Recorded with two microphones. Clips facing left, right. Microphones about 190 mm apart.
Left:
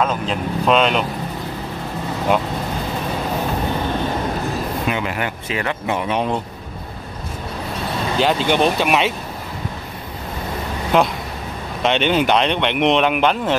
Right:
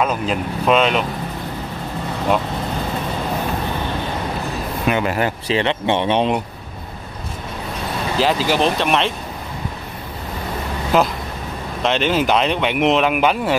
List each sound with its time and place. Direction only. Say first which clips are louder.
0.0 s speech: right 1 dB; 5° right (ahead or behind)
4.8 s speech: right 7 dB; 50° right (ahead or behind)
5.1 s speech: right 5 dB; 30° right (ahead or behind)
8.2 s speech: left 1 dB; centre (ahead or behind)
10.9 s speech: even; 5° right (ahead or behind)